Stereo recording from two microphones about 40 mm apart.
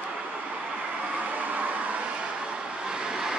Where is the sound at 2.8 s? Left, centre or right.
Centre.